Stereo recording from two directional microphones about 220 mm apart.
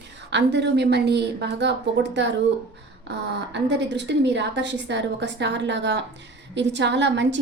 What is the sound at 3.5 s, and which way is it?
A woman's voice, 50° right (ahead or behind).